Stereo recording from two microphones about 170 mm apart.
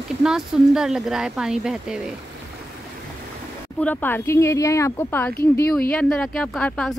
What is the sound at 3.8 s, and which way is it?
Speech, 10° left (ahead or behind).